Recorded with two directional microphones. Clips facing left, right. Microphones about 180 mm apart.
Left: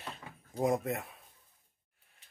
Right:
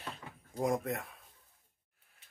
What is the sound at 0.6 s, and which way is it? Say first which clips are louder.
Speech: left 2 dB; 5° left (ahead or behind).